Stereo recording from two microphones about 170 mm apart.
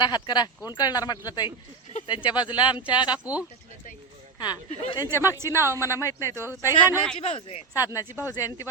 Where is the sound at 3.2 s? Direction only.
10° right (ahead or behind).